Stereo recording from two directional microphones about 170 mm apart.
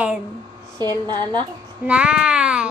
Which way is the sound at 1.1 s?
25° right (ahead or behind).